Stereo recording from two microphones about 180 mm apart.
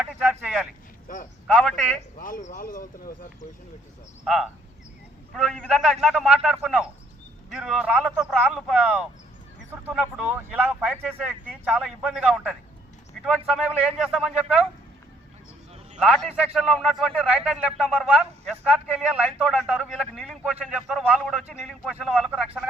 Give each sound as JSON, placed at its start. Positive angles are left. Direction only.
{"t": 0.0, "sound": "a sound", "side_deg": -5}
{"t": 1.0, "sound": "speech", "side_deg": 50}
{"t": 1.5, "sound": "speech", "side_deg": 0}
{"t": 2.1, "sound": "speech", "side_deg": 50}
{"t": 4.2, "sound": "speech", "side_deg": 0}
{"t": 13.2, "sound": "a sound", "side_deg": 0}
{"t": 13.5, "sound": "speech", "side_deg": -5}
{"t": 16.0, "sound": "speech", "side_deg": 0}